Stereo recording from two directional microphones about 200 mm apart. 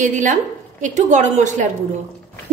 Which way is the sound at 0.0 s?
40° right (ahead or behind).